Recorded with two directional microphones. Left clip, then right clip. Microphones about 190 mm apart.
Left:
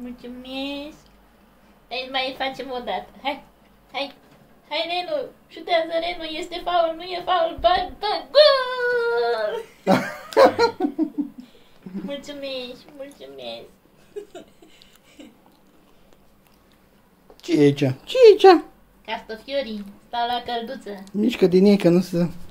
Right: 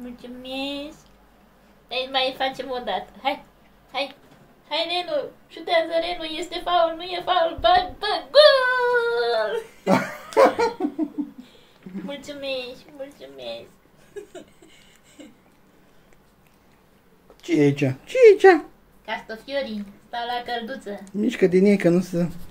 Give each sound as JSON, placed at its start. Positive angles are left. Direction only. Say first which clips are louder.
{"t": 0.2, "sound": "a woman's voice", "louder": "right 1 dB", "side_deg": 5}
{"t": 8.5, "sound": "a sound", "louder": "right 2 dB", "side_deg": 5}
{"t": 9.1, "sound": "a woman's voice", "louder": "even", "side_deg": 0}
{"t": 9.8, "sound": "speech", "louder": "left 1 dB", "side_deg": 20}
{"t": 12.2, "sound": "a woman's voice", "louder": "right 5 dB", "side_deg": 5}
{"t": 17.4, "sound": "a woman's voice", "louder": "left 2 dB", "side_deg": 15}